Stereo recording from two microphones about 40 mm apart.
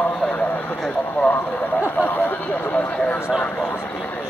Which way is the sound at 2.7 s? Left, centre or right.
Left.